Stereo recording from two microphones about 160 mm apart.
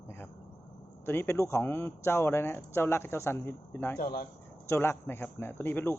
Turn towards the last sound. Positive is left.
turn(degrees=15)  # may be behind; listen again after turning